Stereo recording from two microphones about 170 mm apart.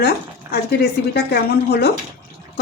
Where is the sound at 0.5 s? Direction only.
65° left (ahead or behind).